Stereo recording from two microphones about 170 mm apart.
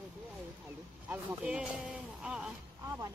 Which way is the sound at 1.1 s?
5° right (ahead or behind).